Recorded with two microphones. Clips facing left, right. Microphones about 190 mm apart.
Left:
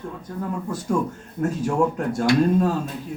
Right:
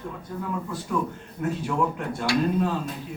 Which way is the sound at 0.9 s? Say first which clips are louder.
Left 4 dB; 45° left (ahead or behind).